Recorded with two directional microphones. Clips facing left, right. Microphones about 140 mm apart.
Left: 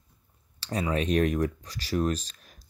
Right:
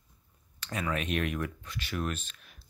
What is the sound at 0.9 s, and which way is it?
Speech, 35° left (ahead or behind).